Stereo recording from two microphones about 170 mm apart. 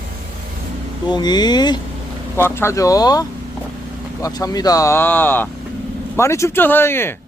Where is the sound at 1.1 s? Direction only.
25° left (ahead or behind).